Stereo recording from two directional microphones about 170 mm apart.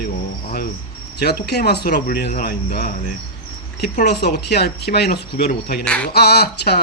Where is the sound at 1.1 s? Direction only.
70° left (ahead or behind).